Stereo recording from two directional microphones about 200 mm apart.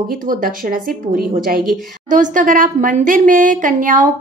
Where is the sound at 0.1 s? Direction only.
45° right (ahead or behind).